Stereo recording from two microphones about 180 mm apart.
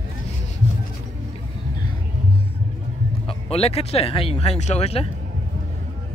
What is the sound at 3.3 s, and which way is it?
Speech, 35° left (ahead or behind).